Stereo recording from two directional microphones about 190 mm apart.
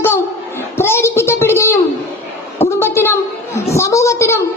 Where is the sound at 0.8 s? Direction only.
15° left (ahead or behind).